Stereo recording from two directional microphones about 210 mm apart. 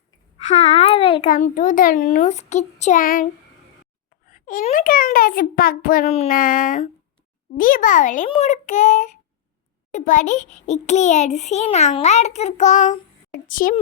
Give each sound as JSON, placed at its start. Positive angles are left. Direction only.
{"t": 0.4, "sound": "a child's voice", "side_deg": 35}
{"t": 1.3, "sound": "a child's voice", "side_deg": 40}
{"t": 4.3, "sound": "a child's voice", "side_deg": 40}